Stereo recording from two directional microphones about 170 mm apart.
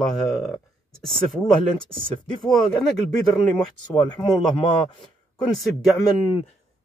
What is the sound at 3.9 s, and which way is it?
Speech, 25° left (ahead or behind).